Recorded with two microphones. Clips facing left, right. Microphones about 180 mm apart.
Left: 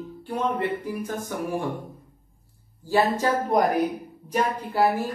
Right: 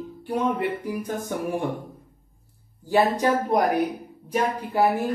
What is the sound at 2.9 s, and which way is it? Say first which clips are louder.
Speech: right 2 dB; 15° right (ahead or behind).